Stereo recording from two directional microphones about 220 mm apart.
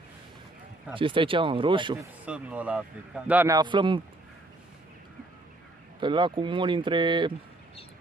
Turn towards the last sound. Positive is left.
turn(degrees=-20)  # may be behind; listen again after turning